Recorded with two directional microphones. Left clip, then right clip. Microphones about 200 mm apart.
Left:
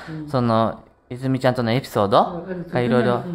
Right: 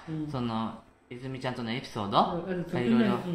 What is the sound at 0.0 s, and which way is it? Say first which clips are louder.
Speech: left 11 dB; 45° left (ahead or behind).